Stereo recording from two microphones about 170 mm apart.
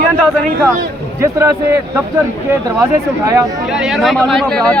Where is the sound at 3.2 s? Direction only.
15° right (ahead or behind).